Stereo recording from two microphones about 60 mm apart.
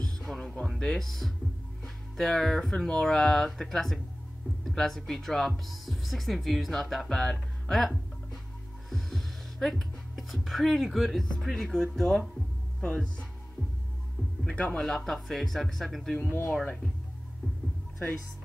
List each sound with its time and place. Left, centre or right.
0.0 s music: centre
0.7 s speech: centre
8.9 s speech: centre
14.4 s speech: centre
14.8 s speech: centre
16.2 s speech: left